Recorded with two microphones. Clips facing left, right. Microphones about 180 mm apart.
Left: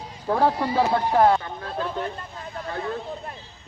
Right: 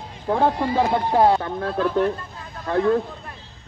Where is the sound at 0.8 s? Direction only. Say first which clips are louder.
Right 1 dB; 15° right (ahead or behind).